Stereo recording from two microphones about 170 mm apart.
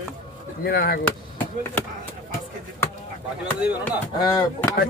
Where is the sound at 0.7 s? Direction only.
65° left (ahead or behind).